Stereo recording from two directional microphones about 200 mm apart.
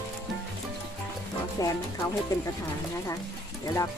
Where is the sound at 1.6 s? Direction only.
15° left (ahead or behind).